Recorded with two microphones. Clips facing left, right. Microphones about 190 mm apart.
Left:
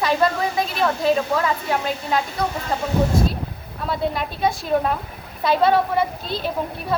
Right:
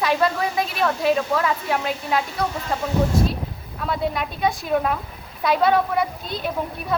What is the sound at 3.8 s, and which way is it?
A woman's voice, centre (ahead or behind).